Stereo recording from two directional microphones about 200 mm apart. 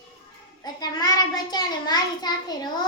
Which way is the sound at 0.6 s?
20° left (ahead or behind).